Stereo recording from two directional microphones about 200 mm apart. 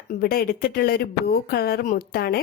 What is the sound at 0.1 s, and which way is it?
Speech, 50° left (ahead or behind).